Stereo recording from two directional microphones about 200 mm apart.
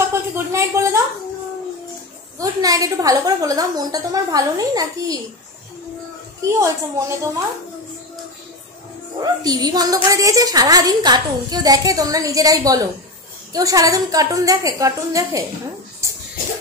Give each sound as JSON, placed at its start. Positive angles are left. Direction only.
{"t": 0.1, "sound": "speech", "side_deg": -15}
{"t": 2.3, "sound": "a woman's voice", "side_deg": -20}
{"t": 6.4, "sound": "a woman's voice", "side_deg": -15}
{"t": 9.2, "sound": "a woman's voice", "side_deg": -20}